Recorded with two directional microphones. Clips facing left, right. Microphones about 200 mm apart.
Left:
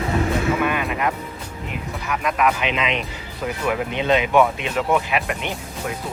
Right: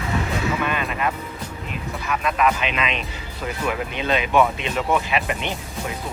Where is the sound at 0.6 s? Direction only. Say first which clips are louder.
Left 3 dB; 10° left (ahead or behind).